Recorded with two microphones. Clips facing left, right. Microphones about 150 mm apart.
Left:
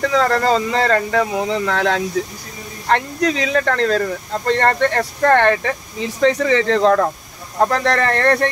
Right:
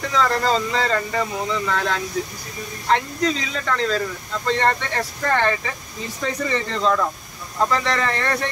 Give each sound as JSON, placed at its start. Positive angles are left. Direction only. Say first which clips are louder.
{"t": 0.1, "sound": "speech", "louder": "left 2 dB", "side_deg": 55}